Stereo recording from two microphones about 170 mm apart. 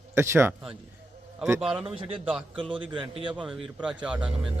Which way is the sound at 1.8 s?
30° right (ahead or behind).